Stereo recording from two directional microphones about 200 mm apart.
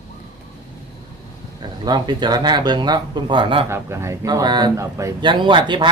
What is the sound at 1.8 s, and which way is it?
Speech, 20° right (ahead or behind).